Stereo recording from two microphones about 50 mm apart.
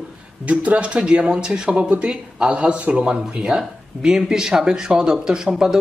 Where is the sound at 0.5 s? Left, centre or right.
Right.